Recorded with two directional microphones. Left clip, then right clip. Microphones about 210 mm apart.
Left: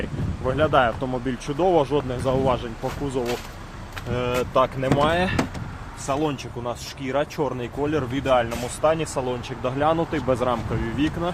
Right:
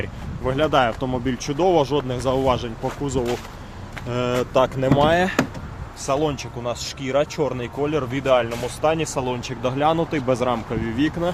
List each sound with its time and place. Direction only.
0.4 s speech: 10° right (ahead or behind)